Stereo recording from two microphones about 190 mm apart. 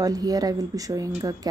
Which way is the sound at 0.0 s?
20° right (ahead or behind).